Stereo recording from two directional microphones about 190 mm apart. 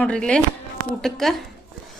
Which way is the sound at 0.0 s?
5° left (ahead or behind).